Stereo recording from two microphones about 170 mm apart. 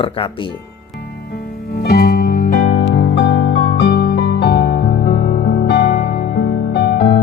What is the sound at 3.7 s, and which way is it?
Music, 65° left (ahead or behind).